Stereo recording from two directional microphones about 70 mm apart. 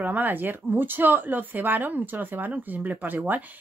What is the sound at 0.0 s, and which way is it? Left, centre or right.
Speech, right.